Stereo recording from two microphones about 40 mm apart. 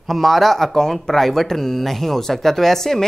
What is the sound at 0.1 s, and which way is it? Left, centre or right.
A woman's voice, centre.